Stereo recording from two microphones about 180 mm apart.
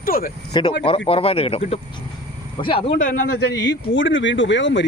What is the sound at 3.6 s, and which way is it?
Speech, 85° left.